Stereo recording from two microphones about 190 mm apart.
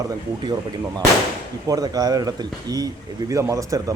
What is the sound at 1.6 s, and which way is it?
Speech, 20° right (ahead or behind).